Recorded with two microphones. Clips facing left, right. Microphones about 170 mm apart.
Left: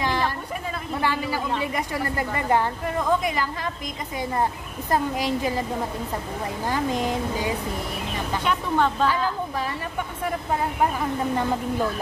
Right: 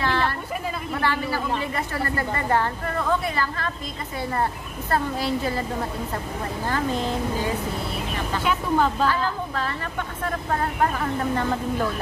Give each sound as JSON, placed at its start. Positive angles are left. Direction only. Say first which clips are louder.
{"t": 0.0, "sound": "a sound", "louder": "right 1 dB", "side_deg": 15}
{"t": 0.9, "sound": "a man's voice", "louder": "even", "side_deg": 15}
{"t": 6.7, "sound": "speech", "louder": "left 1 dB", "side_deg": 15}
{"t": 8.5, "sound": "speech", "louder": "right 1 dB", "side_deg": -5}
{"t": 9.0, "sound": "speech", "louder": "even", "side_deg": 10}